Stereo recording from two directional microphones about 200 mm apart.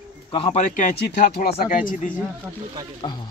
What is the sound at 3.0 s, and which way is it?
Speech, 20° left (ahead or behind).